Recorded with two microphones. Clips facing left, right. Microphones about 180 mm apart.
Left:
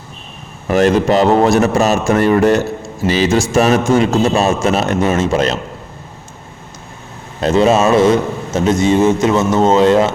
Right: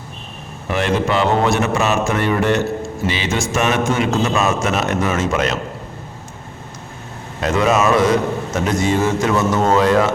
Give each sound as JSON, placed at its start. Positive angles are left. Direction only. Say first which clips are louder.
{"t": 0.7, "sound": "a man's voice", "louder": "left 6 dB", "side_deg": 40}
{"t": 7.4, "sound": "a man's voice", "louder": "left 4 dB", "side_deg": 30}